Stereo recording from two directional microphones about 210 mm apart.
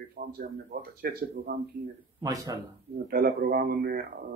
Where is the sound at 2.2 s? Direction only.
15° right (ahead or behind).